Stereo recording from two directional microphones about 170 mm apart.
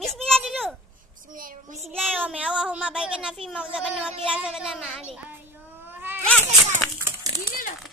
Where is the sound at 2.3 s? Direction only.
5° right (ahead or behind).